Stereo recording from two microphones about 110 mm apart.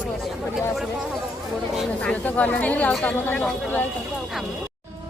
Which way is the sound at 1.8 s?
10° left (ahead or behind).